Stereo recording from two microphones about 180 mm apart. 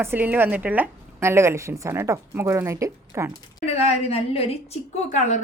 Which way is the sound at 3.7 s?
35° left (ahead or behind).